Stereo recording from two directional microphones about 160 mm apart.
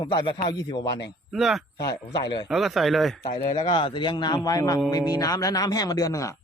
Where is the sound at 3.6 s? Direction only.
30° left (ahead or behind).